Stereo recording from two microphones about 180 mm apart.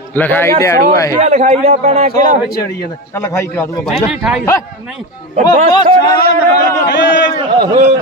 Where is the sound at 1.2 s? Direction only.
40° right (ahead or behind).